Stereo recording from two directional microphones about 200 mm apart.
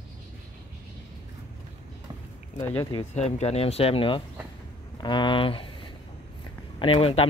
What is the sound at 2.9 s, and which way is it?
Speech, 35° left (ahead or behind).